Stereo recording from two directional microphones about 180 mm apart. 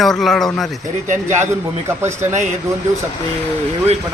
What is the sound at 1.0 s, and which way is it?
A man's voice, 45° right (ahead or behind).